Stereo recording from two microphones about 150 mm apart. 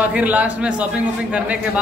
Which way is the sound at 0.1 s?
10° right (ahead or behind).